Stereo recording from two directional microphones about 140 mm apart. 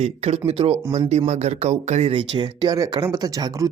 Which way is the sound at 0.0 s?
50° right (ahead or behind).